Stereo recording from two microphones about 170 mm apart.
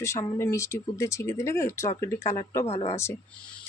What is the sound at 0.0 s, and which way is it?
Speech, 15° left (ahead or behind).